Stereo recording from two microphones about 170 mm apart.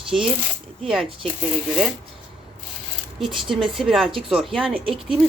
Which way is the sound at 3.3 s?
30° right (ahead or behind).